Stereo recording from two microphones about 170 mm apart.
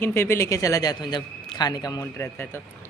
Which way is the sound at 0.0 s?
15° left (ahead or behind).